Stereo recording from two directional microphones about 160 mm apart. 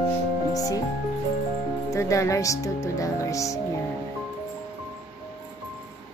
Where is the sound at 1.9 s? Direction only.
20° left (ahead or behind).